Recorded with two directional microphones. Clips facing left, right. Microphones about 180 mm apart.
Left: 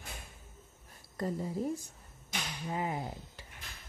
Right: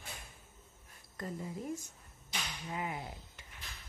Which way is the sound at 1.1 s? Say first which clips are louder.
Left 6 dB; 35° left (ahead or behind).